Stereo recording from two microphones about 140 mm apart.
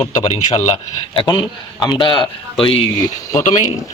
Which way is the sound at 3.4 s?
65° left (ahead or behind).